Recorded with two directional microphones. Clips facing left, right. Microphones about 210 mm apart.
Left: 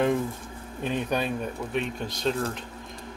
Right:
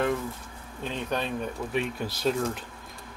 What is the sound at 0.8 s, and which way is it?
Speech, 10° left (ahead or behind).